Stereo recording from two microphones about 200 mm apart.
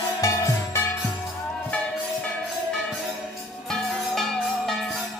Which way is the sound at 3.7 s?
Centre (ahead or behind).